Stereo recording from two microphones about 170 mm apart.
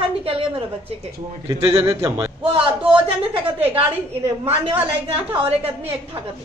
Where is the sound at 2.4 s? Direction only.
35° right (ahead or behind).